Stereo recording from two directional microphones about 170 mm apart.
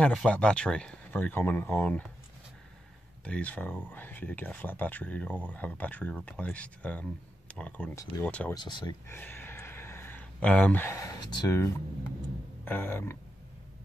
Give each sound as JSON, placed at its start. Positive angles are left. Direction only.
{"t": 0.0, "sound": "speech", "side_deg": 5}
{"t": 3.3, "sound": "speech", "side_deg": 10}
{"t": 8.5, "sound": "speech", "side_deg": 25}
{"t": 9.1, "sound": "a sound", "side_deg": 10}
{"t": 12.6, "sound": "speech", "side_deg": 10}